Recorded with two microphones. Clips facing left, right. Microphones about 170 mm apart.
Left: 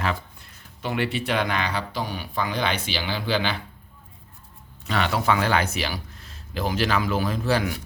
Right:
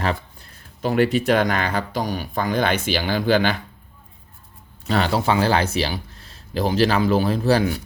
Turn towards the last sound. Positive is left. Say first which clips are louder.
# right 5 dB
turn(degrees=-35)  # may be behind; listen again after turning